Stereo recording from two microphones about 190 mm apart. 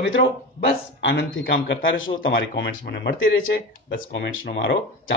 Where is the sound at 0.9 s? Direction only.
70° left (ahead or behind); by 2.1 s 90° left.